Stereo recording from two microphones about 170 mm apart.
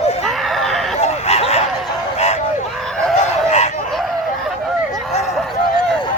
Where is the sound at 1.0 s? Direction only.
40° left (ahead or behind).